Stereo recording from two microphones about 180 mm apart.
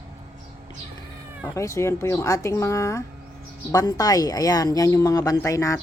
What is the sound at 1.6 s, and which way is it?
Speech, 15° left (ahead or behind).